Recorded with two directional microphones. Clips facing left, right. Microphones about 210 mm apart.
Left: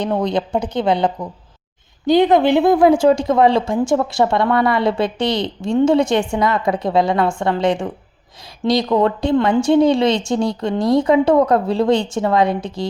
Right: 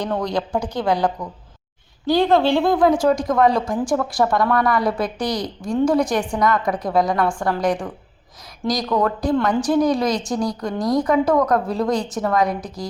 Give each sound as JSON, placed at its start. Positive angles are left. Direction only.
{"t": 0.0, "sound": "a woman's voice", "side_deg": 20}